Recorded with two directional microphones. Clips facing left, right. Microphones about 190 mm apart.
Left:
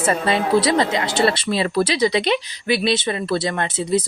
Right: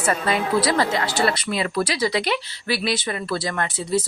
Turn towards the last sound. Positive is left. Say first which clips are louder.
# left 3 dB
turn(degrees=25)  # may be behind; listen again after turning